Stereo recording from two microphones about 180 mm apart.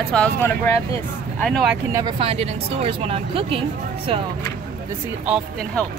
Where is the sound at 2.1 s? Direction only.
30° right (ahead or behind).